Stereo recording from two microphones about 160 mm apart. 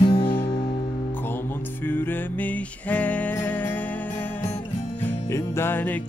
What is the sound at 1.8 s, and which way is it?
Music, 10° left (ahead or behind).